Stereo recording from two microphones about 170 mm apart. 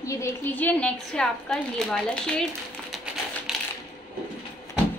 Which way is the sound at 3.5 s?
Centre (ahead or behind).